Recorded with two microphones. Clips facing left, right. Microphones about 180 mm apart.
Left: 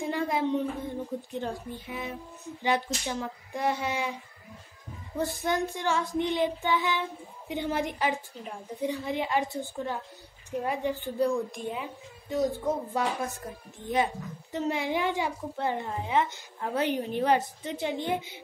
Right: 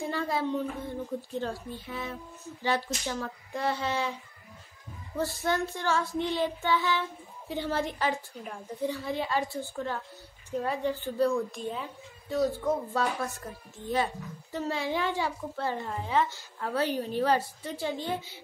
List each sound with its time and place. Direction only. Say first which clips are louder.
0.1 s a sound: left 4 dB; 20° left (ahead or behind)
1.3 s a woman's voice: even; 15° left (ahead or behind)
5.1 s a woman's voice: left 1 dB; 15° left (ahead or behind)